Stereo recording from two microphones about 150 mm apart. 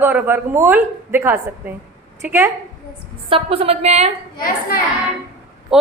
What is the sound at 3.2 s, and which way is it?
Speech, 40° right (ahead or behind).